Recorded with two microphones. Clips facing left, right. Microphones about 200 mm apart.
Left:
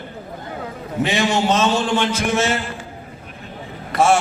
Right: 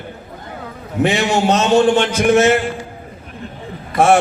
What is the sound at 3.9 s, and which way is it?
Speech, 55° right (ahead or behind).